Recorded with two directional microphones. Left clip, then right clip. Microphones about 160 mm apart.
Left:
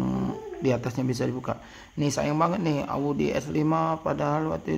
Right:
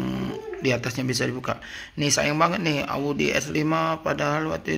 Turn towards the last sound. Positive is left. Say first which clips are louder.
# right 2 dB
turn(degrees=25)  # may be behind; listen again after turning